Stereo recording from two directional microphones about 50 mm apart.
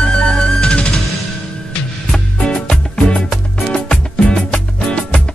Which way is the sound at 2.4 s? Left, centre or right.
Centre.